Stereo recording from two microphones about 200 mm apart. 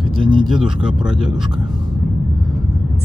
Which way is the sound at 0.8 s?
5° right (ahead or behind).